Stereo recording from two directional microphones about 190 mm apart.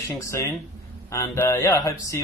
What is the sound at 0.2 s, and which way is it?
Speech, 15° left (ahead or behind).